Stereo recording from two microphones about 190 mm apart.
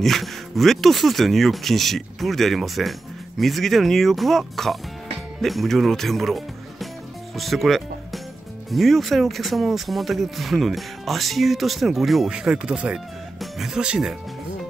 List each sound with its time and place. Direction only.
0.0 s speech: centre (ahead or behind)